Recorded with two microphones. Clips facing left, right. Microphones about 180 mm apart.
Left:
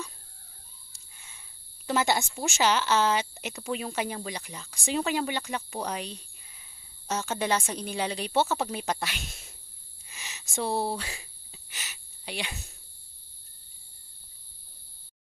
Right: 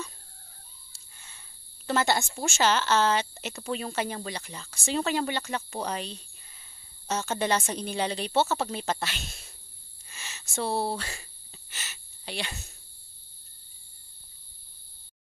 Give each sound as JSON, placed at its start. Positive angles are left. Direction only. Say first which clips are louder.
{"t": 0.9, "sound": "sniff", "louder": "even", "side_deg": 10}
{"t": 1.9, "sound": "speech", "louder": "even", "side_deg": 15}
{"t": 10.0, "sound": "a sound", "louder": "even", "side_deg": 15}